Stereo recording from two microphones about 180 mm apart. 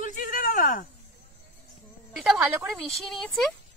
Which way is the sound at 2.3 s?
Centre (ahead or behind).